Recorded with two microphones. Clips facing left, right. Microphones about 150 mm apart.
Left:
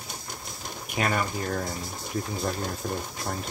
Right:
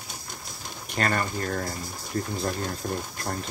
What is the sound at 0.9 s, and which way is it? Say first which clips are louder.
Speech: even; 5° left (ahead or behind).